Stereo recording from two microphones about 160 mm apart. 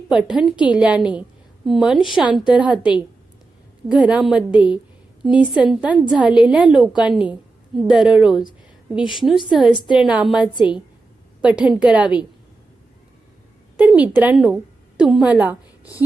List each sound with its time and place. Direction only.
0.1 s a woman's voice: 5° right (ahead or behind)
3.8 s a woman's voice: 10° right (ahead or behind)
13.7 s a woman's voice: 10° right (ahead or behind)